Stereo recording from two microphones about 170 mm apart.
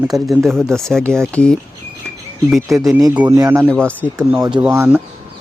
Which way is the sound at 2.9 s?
10° right (ahead or behind).